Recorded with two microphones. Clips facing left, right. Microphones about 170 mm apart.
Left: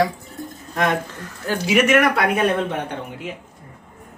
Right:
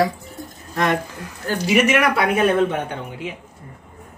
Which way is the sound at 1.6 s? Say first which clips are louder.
Left 1 dB; centre (ahead or behind).